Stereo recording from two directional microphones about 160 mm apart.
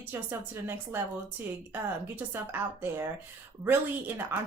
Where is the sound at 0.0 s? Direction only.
15° right (ahead or behind).